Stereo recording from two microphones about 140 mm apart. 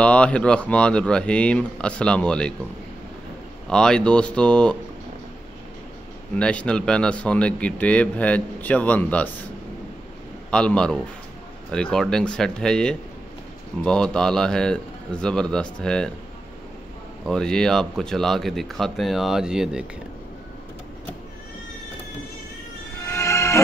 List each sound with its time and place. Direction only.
0.0 s speech: 10° left (ahead or behind)
3.6 s speech: 5° left (ahead or behind)
6.3 s speech: 10° left (ahead or behind)
10.5 s speech: 5° left (ahead or behind)
17.3 s speech: 5° left (ahead or behind)
22.9 s music: 20° left (ahead or behind)